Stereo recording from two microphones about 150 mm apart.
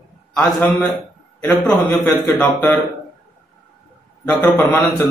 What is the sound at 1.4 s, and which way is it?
Speech, 10° left (ahead or behind).